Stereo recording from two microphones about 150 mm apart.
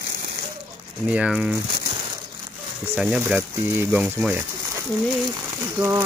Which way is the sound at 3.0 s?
5° right (ahead or behind).